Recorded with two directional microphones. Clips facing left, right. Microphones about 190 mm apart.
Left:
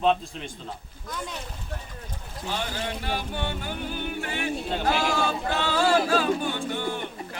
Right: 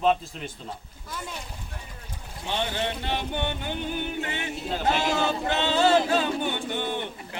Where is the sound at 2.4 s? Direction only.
25° right (ahead or behind).